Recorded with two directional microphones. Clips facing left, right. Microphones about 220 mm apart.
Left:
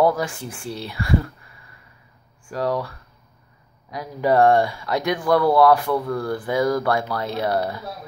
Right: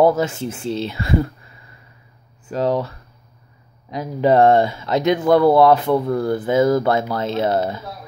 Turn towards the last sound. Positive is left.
turn(degrees=-20)  # may be behind; listen again after turning